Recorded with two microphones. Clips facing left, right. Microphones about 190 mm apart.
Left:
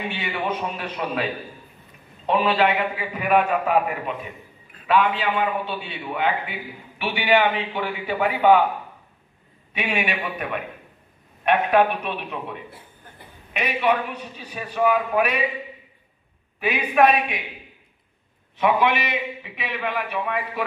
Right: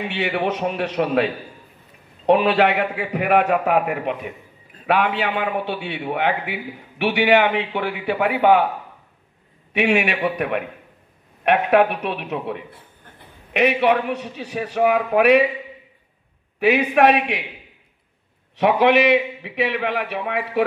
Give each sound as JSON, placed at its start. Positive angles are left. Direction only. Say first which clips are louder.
{"t": 0.1, "sound": "a man's voice", "louder": "right 5 dB", "side_deg": -70}
{"t": 9.8, "sound": "a man's voice", "louder": "right 7 dB", "side_deg": -75}
{"t": 16.5, "sound": "a man's voice", "louder": "right 4 dB", "side_deg": -65}
{"t": 18.6, "sound": "a man's voice", "louder": "right 5 dB", "side_deg": -70}